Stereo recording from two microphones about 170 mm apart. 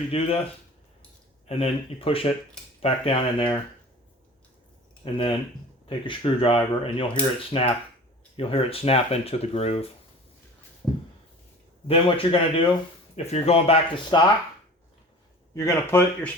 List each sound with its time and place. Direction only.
0.1 s speech: 35° left (ahead or behind)
1.5 s speech: 35° left (ahead or behind)
5.0 s speech: 30° left (ahead or behind)
11.9 s speech: 30° left (ahead or behind)
15.5 s speech: 15° left (ahead or behind)